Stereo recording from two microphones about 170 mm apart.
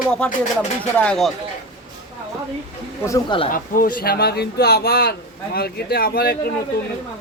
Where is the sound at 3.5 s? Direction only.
55° left (ahead or behind).